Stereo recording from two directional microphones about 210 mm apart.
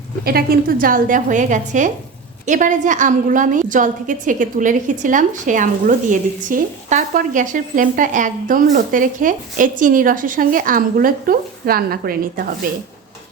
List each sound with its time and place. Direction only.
0.3 s a woman's voice: 45° right (ahead or behind)